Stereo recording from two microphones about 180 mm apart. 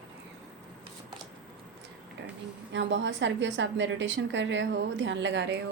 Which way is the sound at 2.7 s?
90° right.